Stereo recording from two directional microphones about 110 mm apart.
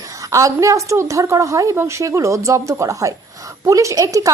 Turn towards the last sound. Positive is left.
turn(degrees=-30)  # may be behind; listen again after turning